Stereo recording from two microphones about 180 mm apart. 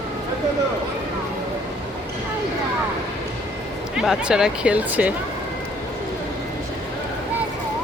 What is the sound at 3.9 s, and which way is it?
Speech, 5° right (ahead or behind).